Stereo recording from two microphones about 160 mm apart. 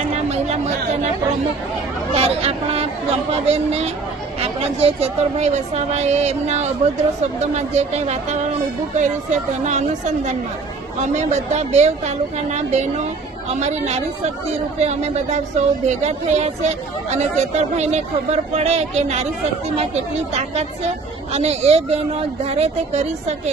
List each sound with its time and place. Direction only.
0.1 s chatter: 45° right (ahead or behind)
2.1 s a woman's voice: 40° right (ahead or behind)